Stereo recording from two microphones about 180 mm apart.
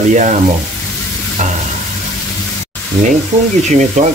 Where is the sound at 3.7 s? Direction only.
40° right (ahead or behind).